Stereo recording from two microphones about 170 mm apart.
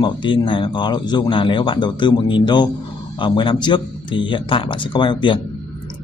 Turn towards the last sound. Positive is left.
turn(degrees=30)  # may be behind; listen again after turning